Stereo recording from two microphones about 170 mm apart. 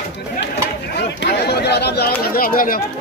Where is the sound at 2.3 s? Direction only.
55° left (ahead or behind).